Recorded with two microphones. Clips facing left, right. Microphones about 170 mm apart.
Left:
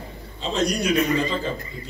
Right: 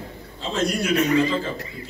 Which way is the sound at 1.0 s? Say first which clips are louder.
Right 2 dB; 75° right (ahead or behind).